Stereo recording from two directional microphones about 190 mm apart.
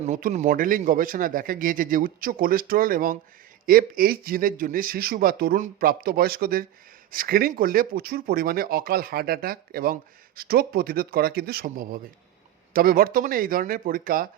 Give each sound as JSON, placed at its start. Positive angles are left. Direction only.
{"t": 0.0, "sound": "speech", "side_deg": -45}